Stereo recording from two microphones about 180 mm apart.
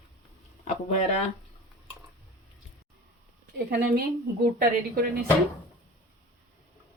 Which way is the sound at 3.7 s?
65° right (ahead or behind).